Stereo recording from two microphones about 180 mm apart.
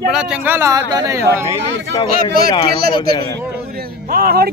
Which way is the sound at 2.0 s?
25° left (ahead or behind).